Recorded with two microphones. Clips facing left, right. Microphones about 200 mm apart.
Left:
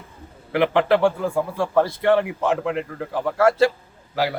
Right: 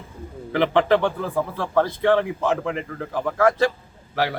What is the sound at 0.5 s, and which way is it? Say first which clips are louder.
A man's voice: even; 10° left (ahead or behind).